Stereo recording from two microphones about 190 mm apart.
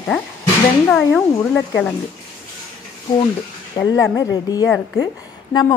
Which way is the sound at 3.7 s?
20° left (ahead or behind).